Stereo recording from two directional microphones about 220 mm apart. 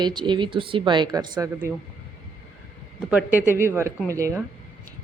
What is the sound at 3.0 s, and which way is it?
Speech, 5° right (ahead or behind).